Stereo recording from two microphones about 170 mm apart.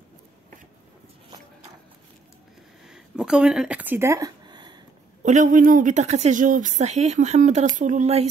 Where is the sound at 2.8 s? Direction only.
5° right (ahead or behind); by 4.8 s 25° right (ahead or behind).